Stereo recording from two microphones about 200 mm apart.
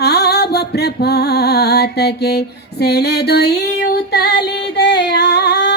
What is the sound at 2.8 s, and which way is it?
Female singing, 55° left (ahead or behind).